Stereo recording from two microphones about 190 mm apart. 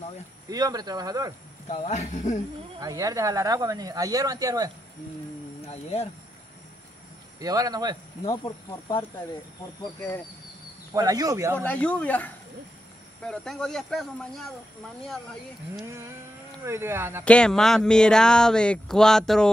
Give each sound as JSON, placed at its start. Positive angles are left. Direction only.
{"t": 0.5, "sound": "speech", "side_deg": -20}
{"t": 1.7, "sound": "speech", "side_deg": 40}
{"t": 2.8, "sound": "speech", "side_deg": -20}
{"t": 5.7, "sound": "speech", "side_deg": 35}
{"t": 7.3, "sound": "speech", "side_deg": -20}
{"t": 8.3, "sound": "speech", "side_deg": 20}
{"t": 10.9, "sound": "speech", "side_deg": -20}
{"t": 11.5, "sound": "speech", "side_deg": 10}
{"t": 16.5, "sound": "speech", "side_deg": -15}
{"t": 17.2, "sound": "speech", "side_deg": 5}